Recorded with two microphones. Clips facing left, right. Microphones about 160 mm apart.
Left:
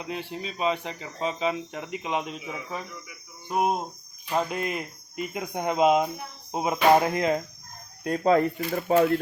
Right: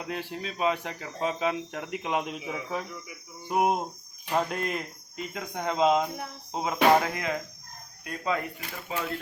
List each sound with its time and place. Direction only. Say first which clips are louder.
0.1 s speech: left 1 dB; centre (ahead or behind)
3.5 s cricket: even; 10° right (ahead or behind)
4.3 s speech: left 1 dB; 5° left (ahead or behind)
6.5 s music: left 4 dB; 15° left (ahead or behind)
7.0 s speech: left 6 dB; 25° left (ahead or behind)
8.0 s speech: left 9 dB; 40° left (ahead or behind)